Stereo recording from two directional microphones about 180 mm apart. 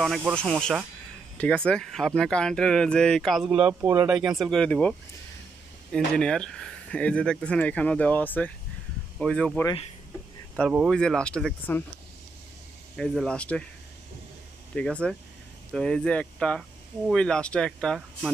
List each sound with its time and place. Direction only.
0.4 s speech: 5° left (ahead or behind); by 4.1 s 15° right (ahead or behind)
4.1 s speech: centre (ahead or behind)
10.7 s speech: 5° right (ahead or behind)
11.0 s speech: 5° left (ahead or behind)
12.9 s speech: centre (ahead or behind)
14.8 s speech: 5° left (ahead or behind)